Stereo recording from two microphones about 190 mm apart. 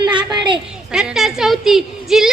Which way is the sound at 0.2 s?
25° right (ahead or behind).